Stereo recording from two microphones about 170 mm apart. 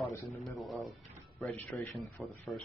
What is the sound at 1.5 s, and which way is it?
Speech, 10° left (ahead or behind).